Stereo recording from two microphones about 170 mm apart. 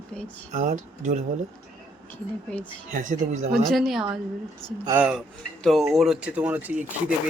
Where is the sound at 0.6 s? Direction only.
50° right (ahead or behind).